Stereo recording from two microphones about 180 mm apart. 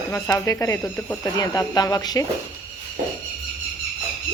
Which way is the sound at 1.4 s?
20° left (ahead or behind).